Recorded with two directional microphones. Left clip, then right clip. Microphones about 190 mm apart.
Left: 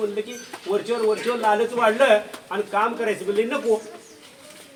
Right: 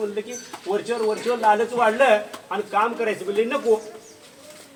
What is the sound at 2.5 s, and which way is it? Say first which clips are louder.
Speech: even; 20° left (ahead or behind).